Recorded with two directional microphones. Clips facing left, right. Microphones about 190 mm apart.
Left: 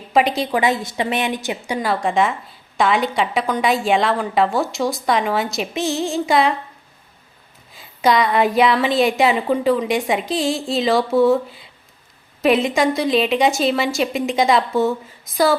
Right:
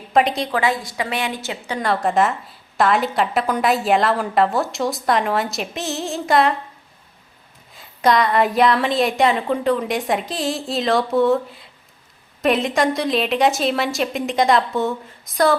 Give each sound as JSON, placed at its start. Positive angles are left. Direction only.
{"t": 0.1, "sound": "a woman's voice", "side_deg": 0}
{"t": 0.5, "sound": "a woman's voice", "side_deg": 20}
{"t": 1.9, "sound": "a woman's voice", "side_deg": 0}
{"t": 7.8, "sound": "a woman's voice", "side_deg": 0}